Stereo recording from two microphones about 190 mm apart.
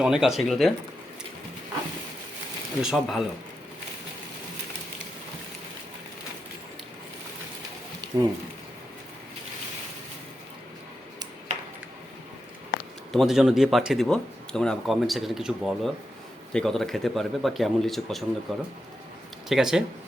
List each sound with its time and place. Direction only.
0.0 s speech: 5° right (ahead or behind)
2.8 s speech: centre (ahead or behind)
8.1 s speech: 20° right (ahead or behind)
13.1 s speech: centre (ahead or behind)